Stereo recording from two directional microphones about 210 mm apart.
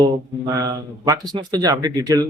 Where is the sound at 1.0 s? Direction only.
20° right (ahead or behind).